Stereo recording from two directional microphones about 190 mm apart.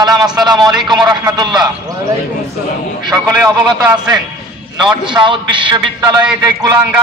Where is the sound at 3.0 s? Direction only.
20° right (ahead or behind).